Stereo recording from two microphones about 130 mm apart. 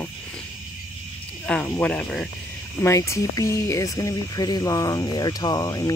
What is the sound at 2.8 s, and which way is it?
Speech, 20° left (ahead or behind).